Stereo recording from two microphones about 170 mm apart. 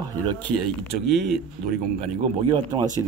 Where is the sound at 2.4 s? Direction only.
25° right (ahead or behind).